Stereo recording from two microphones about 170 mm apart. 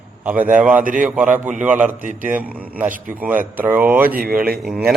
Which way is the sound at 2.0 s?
50° right (ahead or behind).